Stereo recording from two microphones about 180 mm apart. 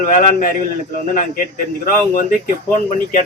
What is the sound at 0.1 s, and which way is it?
A man's voice, 45° left (ahead or behind).